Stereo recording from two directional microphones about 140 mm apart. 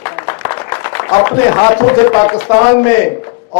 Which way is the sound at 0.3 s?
20° left (ahead or behind).